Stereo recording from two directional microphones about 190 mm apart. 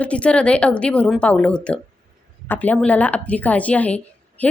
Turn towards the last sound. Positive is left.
turn(degrees=10)  # may be behind; listen again after turning